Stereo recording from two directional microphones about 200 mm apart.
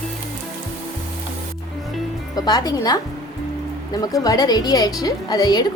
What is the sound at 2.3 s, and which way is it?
Speech, 20° left (ahead or behind).